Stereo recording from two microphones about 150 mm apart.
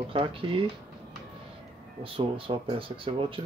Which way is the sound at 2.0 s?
40° right (ahead or behind).